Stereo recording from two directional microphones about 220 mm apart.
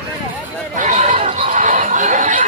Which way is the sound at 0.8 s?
30° right (ahead or behind).